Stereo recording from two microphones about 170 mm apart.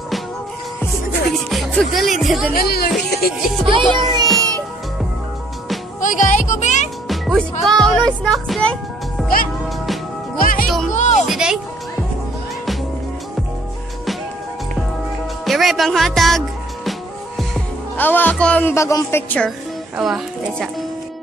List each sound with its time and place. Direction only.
1.5 s speech: centre (ahead or behind)
2.5 s speech: 65° left (ahead or behind)
3.6 s a child's voice: 30° right (ahead or behind)
5.9 s speech: 50° left (ahead or behind)
7.1 s music: centre (ahead or behind)
10.3 s music: 55° left (ahead or behind)
10.9 s music: 45° left (ahead or behind)
11.2 s music: 5° right (ahead or behind)
15.4 s music: centre (ahead or behind)
17.4 s speech: 10° left (ahead or behind)
20.0 s music: centre (ahead or behind)